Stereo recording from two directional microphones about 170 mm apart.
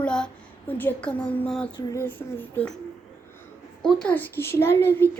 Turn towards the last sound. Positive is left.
turn(degrees=15)  # may be behind; listen again after turning